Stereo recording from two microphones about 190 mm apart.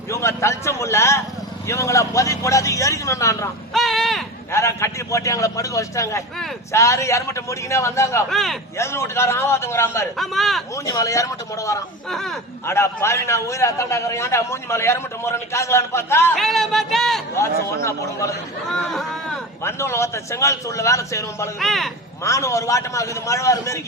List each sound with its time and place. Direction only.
0.1 s a man's voice: 15° left (ahead or behind)
3.8 s a sound: centre (ahead or behind)
4.5 s a man's voice: 15° left (ahead or behind)
8.3 s a man's voice: centre (ahead or behind)
8.8 s a man's voice: 15° left (ahead or behind)
10.2 s a man's voice: centre (ahead or behind)
10.8 s a man's voice: 15° left (ahead or behind)
16.4 s a man's voice: centre (ahead or behind)
17.8 s a man's voice: 15° left (ahead or behind)
18.7 s a man's voice: centre (ahead or behind)
19.6 s a man's voice: 15° left (ahead or behind)
21.6 s a man's voice: centre (ahead or behind)
22.2 s a man's voice: 15° left (ahead or behind)